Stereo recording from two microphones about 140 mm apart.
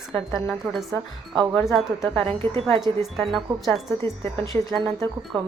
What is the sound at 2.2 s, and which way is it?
Speech, 40° right (ahead or behind).